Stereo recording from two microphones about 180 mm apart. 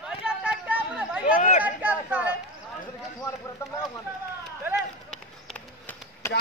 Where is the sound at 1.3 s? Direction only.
45° left (ahead or behind).